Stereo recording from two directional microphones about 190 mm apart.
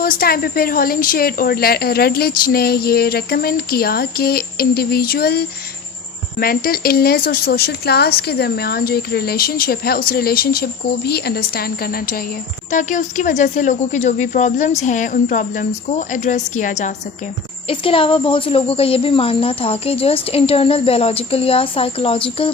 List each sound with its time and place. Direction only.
0.0 s speech: 50° left (ahead or behind)
17.7 s a woman's voice: 30° left (ahead or behind)